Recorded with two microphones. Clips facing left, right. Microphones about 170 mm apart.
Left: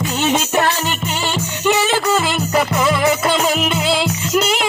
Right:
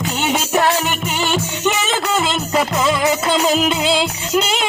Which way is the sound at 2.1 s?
20° right (ahead or behind).